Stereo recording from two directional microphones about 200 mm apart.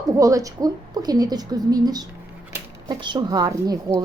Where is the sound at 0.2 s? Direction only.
15° right (ahead or behind).